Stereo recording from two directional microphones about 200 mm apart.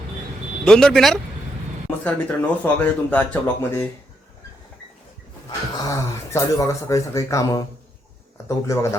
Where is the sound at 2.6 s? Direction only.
10° left (ahead or behind).